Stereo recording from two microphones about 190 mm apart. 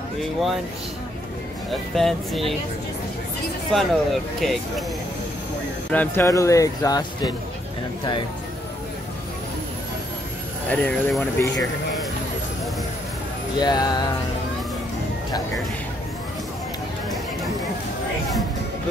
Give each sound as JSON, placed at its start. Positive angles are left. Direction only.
{"t": 0.2, "sound": "speech", "side_deg": 0}
{"t": 1.7, "sound": "speech", "side_deg": 0}
{"t": 3.7, "sound": "speech", "side_deg": 0}
{"t": 5.9, "sound": "speech", "side_deg": 10}
{"t": 10.7, "sound": "speech", "side_deg": 5}
{"t": 13.6, "sound": "music", "side_deg": 20}